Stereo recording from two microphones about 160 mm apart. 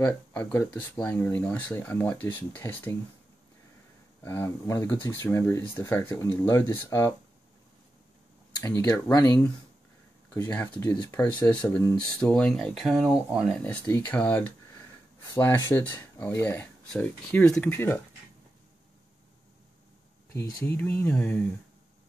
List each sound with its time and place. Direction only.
0.0 s speech: 10° left (ahead or behind)
4.2 s speech: 15° left (ahead or behind)
8.5 s speech: 20° left (ahead or behind)
10.3 s speech: 10° left (ahead or behind)
13.7 s speech: 10° left (ahead or behind)
20.3 s speech: 15° left (ahead or behind)